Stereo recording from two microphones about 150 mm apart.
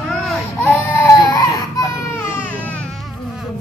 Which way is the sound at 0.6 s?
20° left (ahead or behind).